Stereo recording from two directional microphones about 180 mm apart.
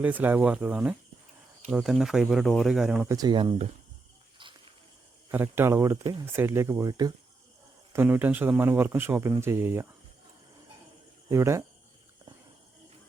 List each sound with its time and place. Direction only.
0.0 s speech: 10° right (ahead or behind)
3.1 s speech: 20° right (ahead or behind)
5.3 s speech: 10° right (ahead or behind)
7.9 s speech: 10° right (ahead or behind)
11.3 s speech: 15° right (ahead or behind)